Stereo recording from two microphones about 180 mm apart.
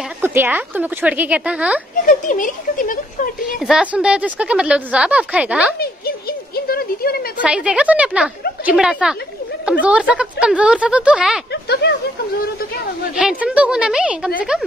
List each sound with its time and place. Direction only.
0.2 s a woman's voice: 10° right (ahead or behind)
2.0 s speech: 45° left (ahead or behind)
3.5 s a woman's voice: 5° right (ahead or behind)
5.8 s a sound: 60° left (ahead or behind)
7.4 s a woman's voice: 5° right (ahead or behind)
11.5 s speech: 70° left (ahead or behind)
13.1 s a woman's voice: 5° right (ahead or behind)